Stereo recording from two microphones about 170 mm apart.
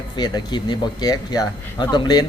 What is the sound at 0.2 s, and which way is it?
Speech, 25° left (ahead or behind).